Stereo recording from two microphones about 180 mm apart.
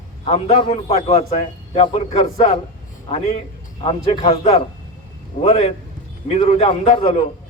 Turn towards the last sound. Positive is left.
turn(degrees=35)  # may be behind; listen again after turning